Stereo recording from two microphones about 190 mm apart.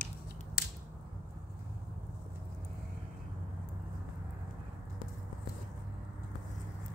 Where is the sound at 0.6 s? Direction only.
50° left (ahead or behind).